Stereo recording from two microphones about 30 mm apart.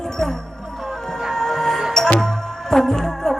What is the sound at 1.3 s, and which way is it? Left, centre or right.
Music, centre.